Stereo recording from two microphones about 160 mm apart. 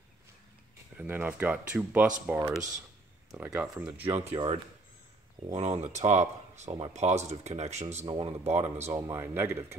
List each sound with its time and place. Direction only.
0.9 s speech: 10° right (ahead or behind)
3.5 s speech: 5° right (ahead or behind)
4.3 s speech: 35° right (ahead or behind)
9.0 s speech: 15° right (ahead or behind)